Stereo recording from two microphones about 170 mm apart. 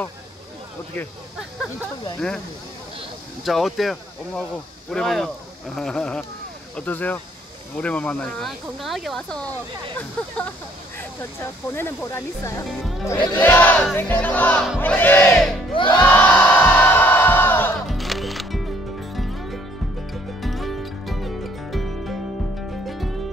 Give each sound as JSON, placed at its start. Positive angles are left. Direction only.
{"t": 2.1, "sound": "speech", "side_deg": 5}
{"t": 3.4, "sound": "speech", "side_deg": 0}
{"t": 6.9, "sound": "music", "side_deg": 10}
{"t": 8.6, "sound": "speech", "side_deg": 0}
{"t": 9.9, "sound": "music", "side_deg": 10}
{"t": 11.7, "sound": "music", "side_deg": 15}
{"t": 15.7, "sound": "music", "side_deg": 30}
{"t": 16.1, "sound": "crowd", "side_deg": 10}
{"t": 17.8, "sound": "music", "side_deg": 0}